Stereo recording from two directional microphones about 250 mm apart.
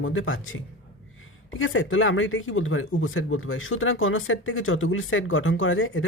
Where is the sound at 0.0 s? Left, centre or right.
Left.